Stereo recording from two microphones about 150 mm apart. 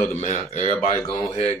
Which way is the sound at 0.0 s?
55° left (ahead or behind).